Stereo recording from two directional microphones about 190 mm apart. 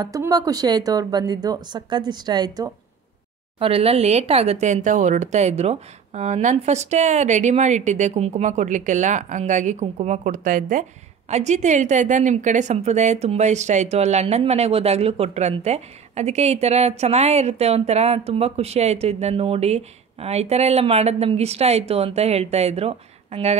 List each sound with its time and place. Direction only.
0.0 s a woman's voice: 20° right (ahead or behind); by 23.6 s 35° right (ahead or behind)